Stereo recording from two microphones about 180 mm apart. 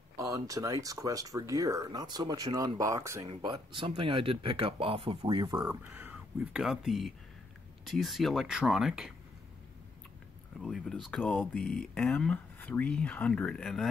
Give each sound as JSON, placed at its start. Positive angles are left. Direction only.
{"t": 0.2, "sound": "speech", "side_deg": -20}
{"t": 5.7, "sound": "speech", "side_deg": -10}
{"t": 10.6, "sound": "speech", "side_deg": 0}